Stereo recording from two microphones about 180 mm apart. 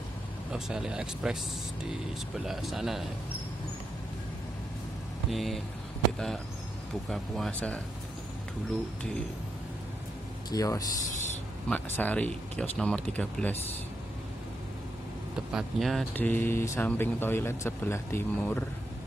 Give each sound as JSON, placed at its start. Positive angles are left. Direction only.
{"t": 0.5, "sound": "speech", "side_deg": -5}
{"t": 5.3, "sound": "speech", "side_deg": 0}
{"t": 10.5, "sound": "speech", "side_deg": 20}
{"t": 11.7, "sound": "speech", "side_deg": 10}
{"t": 15.5, "sound": "speech", "side_deg": 0}